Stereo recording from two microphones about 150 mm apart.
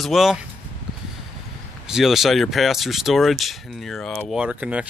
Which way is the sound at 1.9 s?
Centre (ahead or behind).